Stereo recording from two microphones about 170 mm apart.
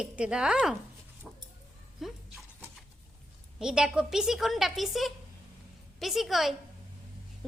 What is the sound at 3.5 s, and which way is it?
A woman's voice, 5° right (ahead or behind).